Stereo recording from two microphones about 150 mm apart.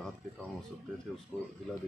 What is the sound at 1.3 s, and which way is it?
Speech, 10° right (ahead or behind).